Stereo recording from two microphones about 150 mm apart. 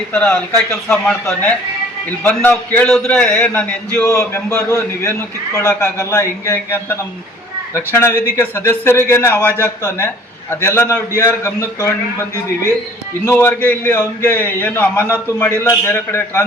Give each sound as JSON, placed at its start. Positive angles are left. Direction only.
{"t": 0.1, "sound": "a man's voice", "side_deg": 10}
{"t": 13.2, "sound": "a man's voice", "side_deg": 15}